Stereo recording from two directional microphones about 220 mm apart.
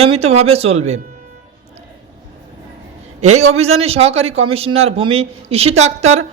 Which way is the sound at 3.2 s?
30° right (ahead or behind).